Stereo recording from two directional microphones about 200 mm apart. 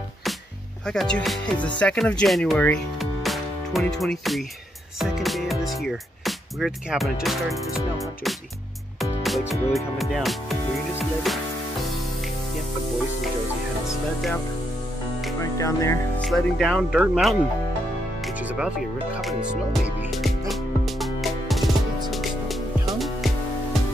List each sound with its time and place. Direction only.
0.8 s speech: 5° left (ahead or behind)
9.5 s speech: centre (ahead or behind)
15.4 s speech: 15° left (ahead or behind)
16.2 s speech: centre (ahead or behind)
18.2 s music: 5° right (ahead or behind)
19.7 s music: centre (ahead or behind)